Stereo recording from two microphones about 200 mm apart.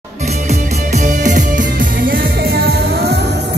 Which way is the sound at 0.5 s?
35° right (ahead or behind).